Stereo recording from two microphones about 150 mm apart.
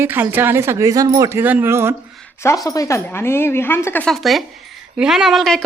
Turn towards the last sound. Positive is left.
turn(degrees=0)  # may be behind; listen again after turning